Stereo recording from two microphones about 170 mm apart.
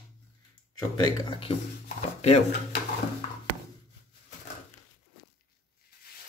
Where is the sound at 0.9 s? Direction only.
30° left (ahead or behind).